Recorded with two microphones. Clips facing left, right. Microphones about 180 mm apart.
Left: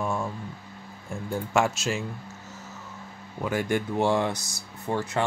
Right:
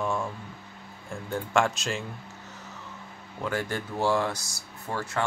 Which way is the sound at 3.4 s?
10° left (ahead or behind).